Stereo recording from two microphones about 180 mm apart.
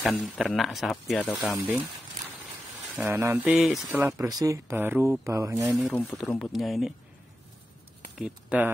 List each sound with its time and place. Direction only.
0.0 s speech: centre (ahead or behind)
3.1 s speech: 15° right (ahead or behind)
4.0 s speech: 20° right (ahead or behind)
5.8 s speech: 10° left (ahead or behind)
8.2 s speech: 10° right (ahead or behind)